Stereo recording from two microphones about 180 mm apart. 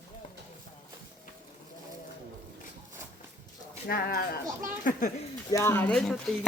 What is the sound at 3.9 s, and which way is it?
Speech, 55° left (ahead or behind).